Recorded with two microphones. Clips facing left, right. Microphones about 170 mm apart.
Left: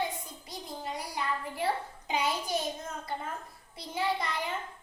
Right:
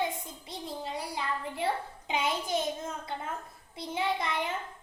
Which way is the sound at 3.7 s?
20° right (ahead or behind).